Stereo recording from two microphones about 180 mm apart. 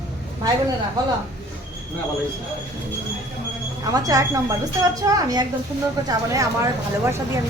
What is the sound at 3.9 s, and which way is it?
A woman's voice, 20° right (ahead or behind).